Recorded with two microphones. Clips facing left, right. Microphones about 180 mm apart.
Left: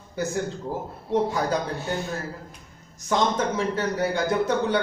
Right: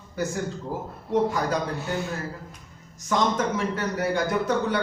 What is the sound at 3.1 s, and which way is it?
A man's voice, 30° left (ahead or behind).